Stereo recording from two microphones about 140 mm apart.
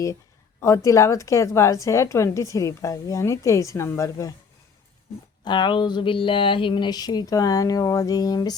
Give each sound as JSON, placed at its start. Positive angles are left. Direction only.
{"t": 0.6, "sound": "speech", "side_deg": 20}
{"t": 5.5, "sound": "speech", "side_deg": 35}